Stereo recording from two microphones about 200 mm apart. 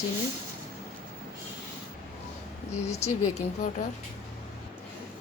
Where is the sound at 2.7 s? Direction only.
30° left (ahead or behind).